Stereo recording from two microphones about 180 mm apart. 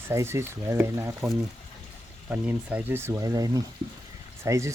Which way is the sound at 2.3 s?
10° right (ahead or behind).